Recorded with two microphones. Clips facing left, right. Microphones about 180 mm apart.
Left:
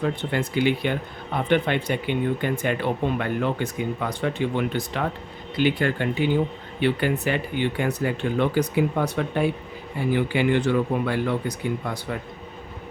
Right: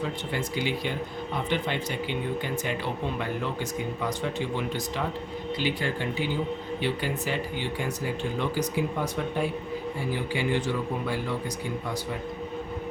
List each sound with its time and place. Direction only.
0.0 s speech: 60° left (ahead or behind)